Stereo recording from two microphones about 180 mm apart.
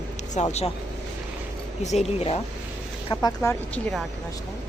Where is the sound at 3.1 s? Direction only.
15° left (ahead or behind).